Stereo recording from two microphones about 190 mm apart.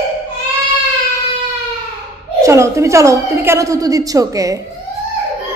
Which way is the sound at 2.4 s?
15° right (ahead or behind).